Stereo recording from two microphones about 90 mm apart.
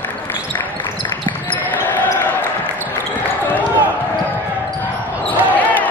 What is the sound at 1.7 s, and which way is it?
Basketball bounce, 20° left (ahead or behind).